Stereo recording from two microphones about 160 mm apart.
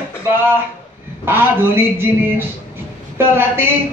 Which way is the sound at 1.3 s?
15° right (ahead or behind).